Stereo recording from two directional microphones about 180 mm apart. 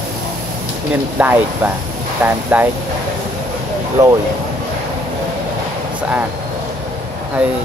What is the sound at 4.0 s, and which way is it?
Speech, 20° right (ahead or behind).